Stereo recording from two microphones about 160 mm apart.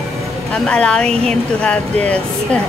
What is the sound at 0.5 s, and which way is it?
A woman's voice, 5° left (ahead or behind).